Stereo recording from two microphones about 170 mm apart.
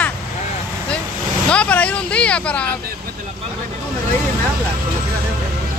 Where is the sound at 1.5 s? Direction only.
5° left (ahead or behind).